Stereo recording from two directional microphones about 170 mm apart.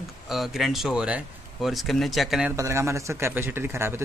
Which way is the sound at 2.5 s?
15° right (ahead or behind).